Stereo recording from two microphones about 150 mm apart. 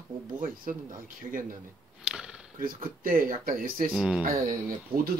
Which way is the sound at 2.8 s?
70° right (ahead or behind).